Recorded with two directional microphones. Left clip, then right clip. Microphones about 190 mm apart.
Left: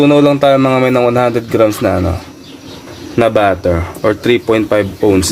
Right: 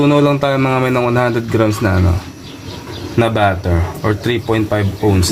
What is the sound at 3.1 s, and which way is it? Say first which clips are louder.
Speech: left 4 dB; 50° left (ahead or behind).